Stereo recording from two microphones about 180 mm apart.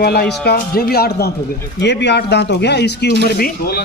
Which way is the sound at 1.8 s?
75° left (ahead or behind).